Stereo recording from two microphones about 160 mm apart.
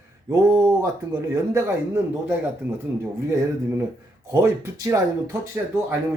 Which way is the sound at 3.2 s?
20° right (ahead or behind).